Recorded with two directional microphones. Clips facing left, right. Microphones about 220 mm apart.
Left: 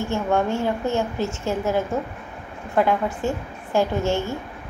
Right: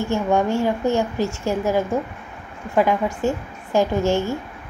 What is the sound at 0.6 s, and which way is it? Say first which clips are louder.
A woman's voice: right 3 dB; 15° right (ahead or behind).